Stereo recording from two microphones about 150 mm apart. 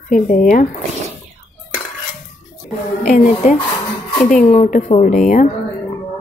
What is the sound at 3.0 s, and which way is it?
A woman's voice, 60° left (ahead or behind).